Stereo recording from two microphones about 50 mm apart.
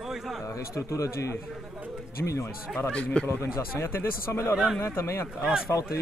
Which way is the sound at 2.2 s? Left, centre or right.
Left.